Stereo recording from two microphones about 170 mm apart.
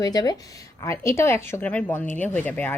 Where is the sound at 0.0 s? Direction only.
20° left (ahead or behind).